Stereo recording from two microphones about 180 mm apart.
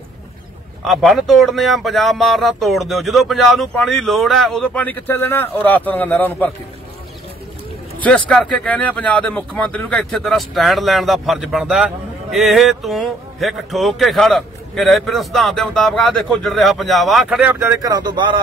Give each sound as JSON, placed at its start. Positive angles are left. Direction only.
{"t": 0.8, "sound": "speech", "side_deg": 0}
{"t": 8.3, "sound": "speech", "side_deg": 5}
{"t": 17.8, "sound": "speech", "side_deg": -25}